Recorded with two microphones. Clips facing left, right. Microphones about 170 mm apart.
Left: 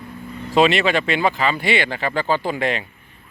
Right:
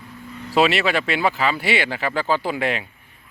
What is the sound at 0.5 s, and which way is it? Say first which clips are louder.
Speech: left 2 dB; 5° right (ahead or behind).